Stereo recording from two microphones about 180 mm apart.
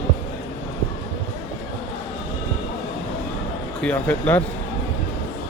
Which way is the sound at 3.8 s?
10° left (ahead or behind).